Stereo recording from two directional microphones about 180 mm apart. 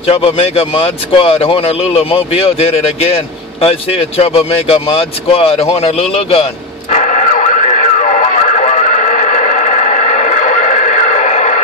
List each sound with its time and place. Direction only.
0.0 s speech: 30° left (ahead or behind)
6.9 s radio: 40° left (ahead or behind)